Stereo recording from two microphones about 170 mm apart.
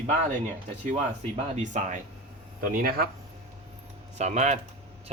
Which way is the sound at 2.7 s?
60° right (ahead or behind).